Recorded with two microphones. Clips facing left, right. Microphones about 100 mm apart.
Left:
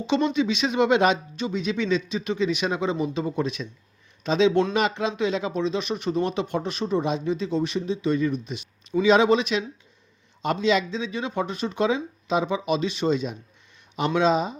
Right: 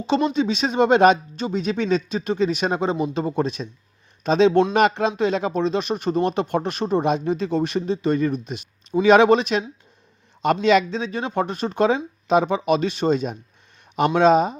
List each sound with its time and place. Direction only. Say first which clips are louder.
0.3 s speech: right 2 dB; 40° right (ahead or behind)
4.7 s speech: right 5 dB; 55° right (ahead or behind)
9.0 s speech: right 4 dB; 60° right (ahead or behind)
9.4 s speech: right 3 dB; 45° right (ahead or behind)
10.4 s speech: right 5 dB; 60° right (ahead or behind)